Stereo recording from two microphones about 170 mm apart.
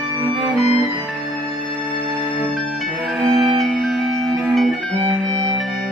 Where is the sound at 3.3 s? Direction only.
Centre (ahead or behind).